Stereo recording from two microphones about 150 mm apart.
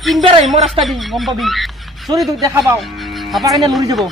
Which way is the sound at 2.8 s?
Centre (ahead or behind).